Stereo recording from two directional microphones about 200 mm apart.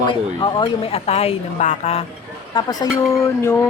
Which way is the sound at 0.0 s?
20° left (ahead or behind).